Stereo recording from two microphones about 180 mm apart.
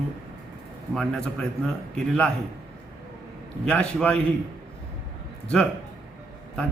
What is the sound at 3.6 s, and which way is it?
Speech, 5° left (ahead or behind).